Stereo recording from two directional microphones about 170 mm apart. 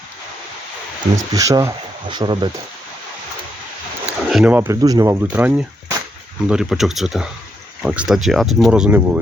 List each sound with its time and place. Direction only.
1.1 s speech: 20° right (ahead or behind)
4.0 s a sound: 5° right (ahead or behind)
4.8 s speech: 20° right (ahead or behind)